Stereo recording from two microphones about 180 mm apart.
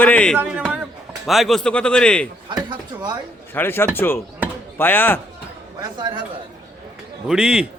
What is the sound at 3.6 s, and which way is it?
Speech, 10° left (ahead or behind).